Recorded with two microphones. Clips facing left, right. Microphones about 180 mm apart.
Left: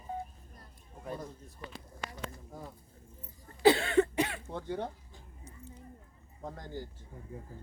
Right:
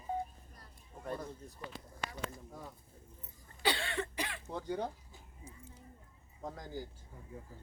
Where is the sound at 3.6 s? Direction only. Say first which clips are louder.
Left 12 dB; 45° left (ahead or behind).